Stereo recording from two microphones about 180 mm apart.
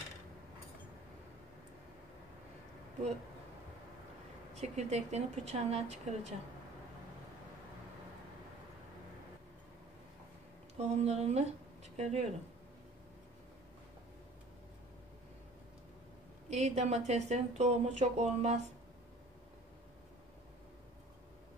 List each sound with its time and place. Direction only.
4.6 s a woman's voice: 40° right (ahead or behind)
10.8 s speech: 35° right (ahead or behind)
16.4 s a woman's voice: 40° right (ahead or behind)